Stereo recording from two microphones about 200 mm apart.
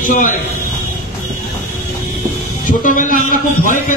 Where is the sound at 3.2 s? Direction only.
40° left (ahead or behind).